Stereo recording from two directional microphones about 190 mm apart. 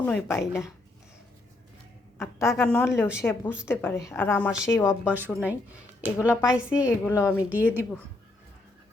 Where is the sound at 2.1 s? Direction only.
15° left (ahead or behind).